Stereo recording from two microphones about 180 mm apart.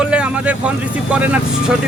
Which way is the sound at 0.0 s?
5° right (ahead or behind).